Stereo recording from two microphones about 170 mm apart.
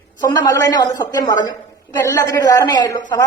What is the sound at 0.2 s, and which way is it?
A woman's voice, 20° left (ahead or behind).